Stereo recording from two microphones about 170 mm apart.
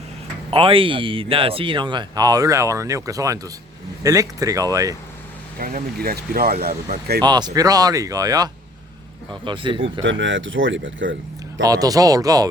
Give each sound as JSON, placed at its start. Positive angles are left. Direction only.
{"t": 0.5, "sound": "speech", "side_deg": -30}
{"t": 5.5, "sound": "speech", "side_deg": -60}
{"t": 7.3, "sound": "speech", "side_deg": -25}
{"t": 10.1, "sound": "speech", "side_deg": -90}
{"t": 11.6, "sound": "speech", "side_deg": -20}